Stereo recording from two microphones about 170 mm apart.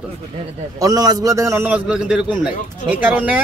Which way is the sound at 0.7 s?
20° right (ahead or behind).